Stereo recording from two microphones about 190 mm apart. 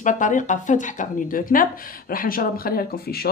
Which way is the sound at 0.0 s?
45° left (ahead or behind).